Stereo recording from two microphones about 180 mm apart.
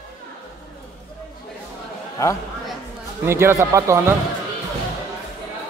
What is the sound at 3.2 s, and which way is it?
Speech, 15° right (ahead or behind).